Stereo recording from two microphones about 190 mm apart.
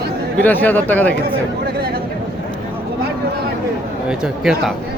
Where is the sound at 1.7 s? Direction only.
55° right (ahead or behind).